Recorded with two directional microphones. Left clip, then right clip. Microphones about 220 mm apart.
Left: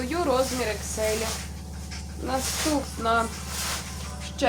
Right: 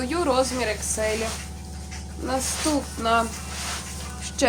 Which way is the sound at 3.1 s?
30° right (ahead or behind).